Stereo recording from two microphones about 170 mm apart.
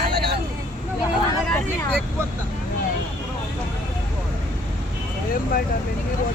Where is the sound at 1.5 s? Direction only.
5° left (ahead or behind).